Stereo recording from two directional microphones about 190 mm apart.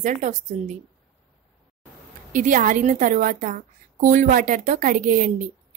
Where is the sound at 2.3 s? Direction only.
45° right (ahead or behind).